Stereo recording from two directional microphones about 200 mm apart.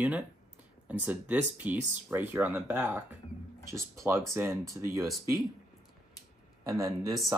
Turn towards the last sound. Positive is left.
turn(degrees=-15)  # may be behind; listen again after turning